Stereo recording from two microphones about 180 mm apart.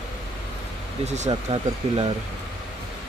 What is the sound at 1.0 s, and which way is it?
Speech, 40° right (ahead or behind).